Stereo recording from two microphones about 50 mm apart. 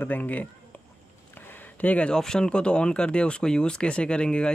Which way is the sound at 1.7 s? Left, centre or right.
Left.